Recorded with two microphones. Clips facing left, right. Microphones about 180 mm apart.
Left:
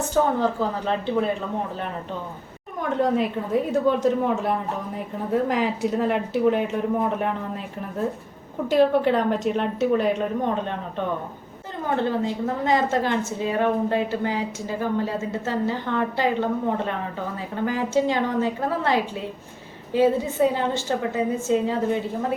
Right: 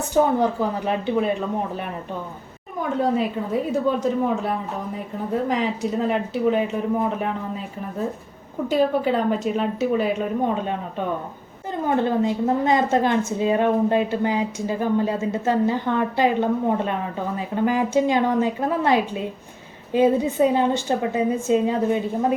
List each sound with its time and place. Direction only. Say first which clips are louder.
0.1 s a woman's voice: right 3 dB; 15° right (ahead or behind)
3.0 s speech: even; centre (ahead or behind)
11.9 s a woman's voice: right 3 dB; 15° right (ahead or behind)